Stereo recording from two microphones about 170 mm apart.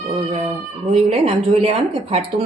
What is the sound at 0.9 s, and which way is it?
Speech, 40° right (ahead or behind).